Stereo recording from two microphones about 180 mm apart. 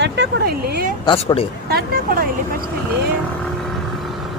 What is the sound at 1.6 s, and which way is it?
Speech, 60° right (ahead or behind).